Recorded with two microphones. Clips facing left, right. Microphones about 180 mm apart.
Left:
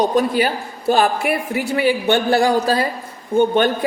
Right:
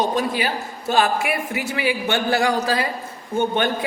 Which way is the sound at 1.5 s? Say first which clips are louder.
Left 5 dB; 35° left (ahead or behind).